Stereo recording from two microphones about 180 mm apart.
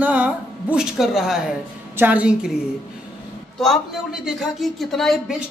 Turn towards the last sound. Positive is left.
turn(degrees=0)  # may be behind; listen again after turning